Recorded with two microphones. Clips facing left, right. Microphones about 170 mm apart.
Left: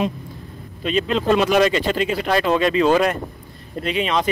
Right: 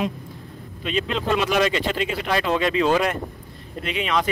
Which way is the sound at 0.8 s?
40° left (ahead or behind).